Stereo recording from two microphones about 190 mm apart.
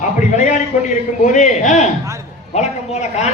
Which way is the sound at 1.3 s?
40° left (ahead or behind).